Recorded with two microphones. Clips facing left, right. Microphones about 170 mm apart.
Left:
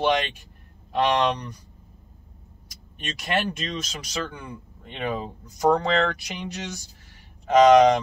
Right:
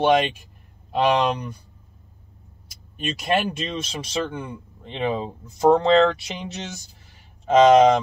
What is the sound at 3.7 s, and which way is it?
Speech, 25° right (ahead or behind).